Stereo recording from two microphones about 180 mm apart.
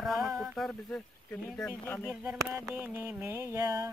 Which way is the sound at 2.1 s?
10° right (ahead or behind).